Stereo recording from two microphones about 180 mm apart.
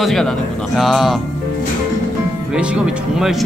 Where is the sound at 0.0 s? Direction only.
Centre (ahead or behind).